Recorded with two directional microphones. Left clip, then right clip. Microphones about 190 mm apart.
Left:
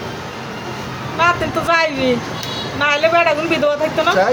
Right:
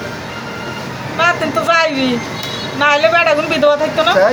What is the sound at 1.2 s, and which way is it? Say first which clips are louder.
Speech: right 2 dB; 25° left (ahead or behind).